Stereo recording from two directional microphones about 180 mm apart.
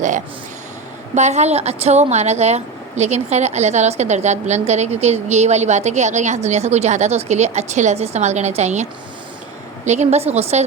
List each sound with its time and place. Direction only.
1.1 s a woman's voice: 40° right (ahead or behind)